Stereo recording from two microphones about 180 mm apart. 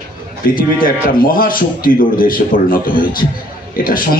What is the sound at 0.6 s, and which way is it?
A man's voice, 50° left (ahead or behind).